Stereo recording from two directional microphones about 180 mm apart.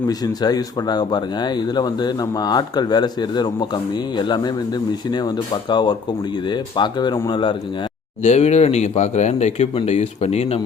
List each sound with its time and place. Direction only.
0.1 s speech: 20° left (ahead or behind)
8.2 s speech: 40° left (ahead or behind)